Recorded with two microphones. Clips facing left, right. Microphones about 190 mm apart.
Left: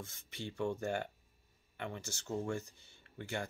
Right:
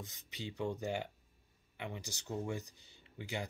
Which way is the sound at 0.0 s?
15° right (ahead or behind).